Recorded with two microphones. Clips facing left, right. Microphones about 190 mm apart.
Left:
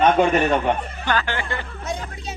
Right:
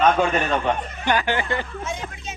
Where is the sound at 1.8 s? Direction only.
35° left (ahead or behind).